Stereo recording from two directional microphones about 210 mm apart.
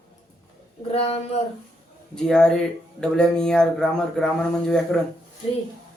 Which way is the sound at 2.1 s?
Centre (ahead or behind).